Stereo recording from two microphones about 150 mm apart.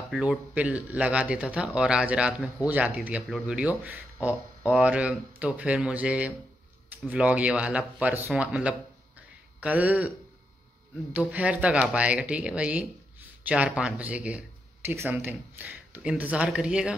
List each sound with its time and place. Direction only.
0.1 s speech: 5° right (ahead or behind)
11.1 s speech: 10° right (ahead or behind)